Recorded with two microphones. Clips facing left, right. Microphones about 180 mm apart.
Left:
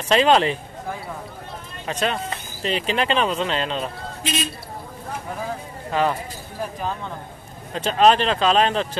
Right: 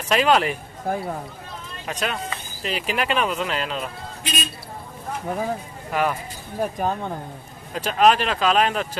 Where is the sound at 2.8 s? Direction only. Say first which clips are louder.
Left 1 dB; 30° left (ahead or behind).